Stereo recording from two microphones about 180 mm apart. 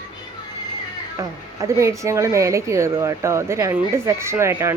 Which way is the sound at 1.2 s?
15° right (ahead or behind).